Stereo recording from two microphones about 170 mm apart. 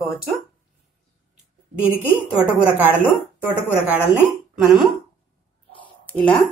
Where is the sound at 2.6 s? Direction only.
10° right (ahead or behind).